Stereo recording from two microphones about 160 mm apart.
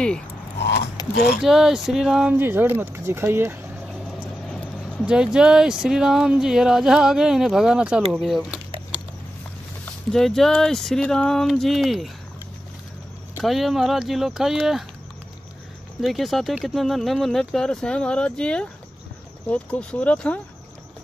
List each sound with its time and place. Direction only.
1.1 s speech: 90° left
1.4 s speech: centre (ahead or behind)
2.3 s speech: 15° right (ahead or behind)
4.5 s vehicle: 5° left (ahead or behind)
5.0 s speech: 5° right (ahead or behind)
10.1 s speech: centre (ahead or behind)
13.4 s speech: centre (ahead or behind)
16.0 s speech: centre (ahead or behind)